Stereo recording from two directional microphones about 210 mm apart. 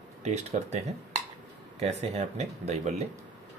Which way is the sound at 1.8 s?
30° right (ahead or behind).